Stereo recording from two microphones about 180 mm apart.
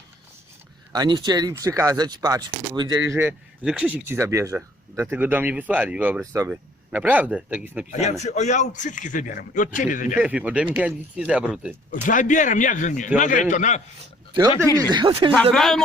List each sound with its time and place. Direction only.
0.9 s speech: 25° right (ahead or behind)
8.2 s a man's voice: 40° left (ahead or behind)
10.2 s speech: 5° right (ahead or behind)
11.9 s a man's voice: 45° left (ahead or behind)
14.8 s speech: 25° right (ahead or behind)
15.5 s speech: centre (ahead or behind)